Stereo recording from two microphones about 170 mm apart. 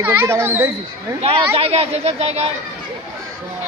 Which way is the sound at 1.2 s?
35° right (ahead or behind).